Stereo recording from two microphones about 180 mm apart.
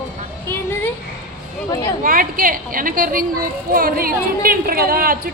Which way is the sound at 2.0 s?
50° right (ahead or behind).